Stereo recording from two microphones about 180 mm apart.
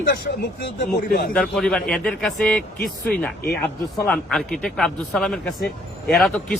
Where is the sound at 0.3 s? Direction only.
55° left (ahead or behind).